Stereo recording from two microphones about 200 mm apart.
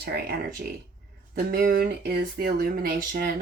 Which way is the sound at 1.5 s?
50° right (ahead or behind).